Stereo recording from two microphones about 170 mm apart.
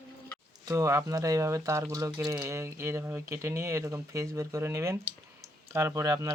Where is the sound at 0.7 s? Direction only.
20° right (ahead or behind).